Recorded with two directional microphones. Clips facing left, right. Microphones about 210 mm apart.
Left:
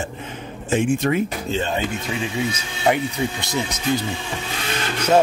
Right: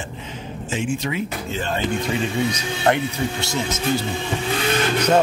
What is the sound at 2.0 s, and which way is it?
Speech, 10° left (ahead or behind).